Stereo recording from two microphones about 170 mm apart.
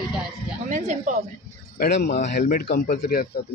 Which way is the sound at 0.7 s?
45° right (ahead or behind).